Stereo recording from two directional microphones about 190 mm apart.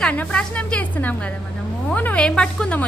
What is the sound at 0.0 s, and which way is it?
A woman's voice, 5° left (ahead or behind).